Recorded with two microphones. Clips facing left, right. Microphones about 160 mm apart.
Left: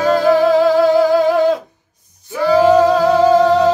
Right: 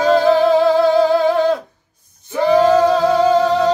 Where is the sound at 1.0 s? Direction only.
15° left (ahead or behind).